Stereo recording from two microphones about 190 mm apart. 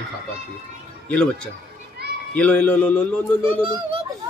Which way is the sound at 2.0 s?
55° right (ahead or behind).